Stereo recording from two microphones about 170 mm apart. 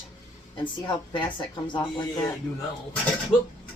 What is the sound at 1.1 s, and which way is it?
Speech, 30° left (ahead or behind).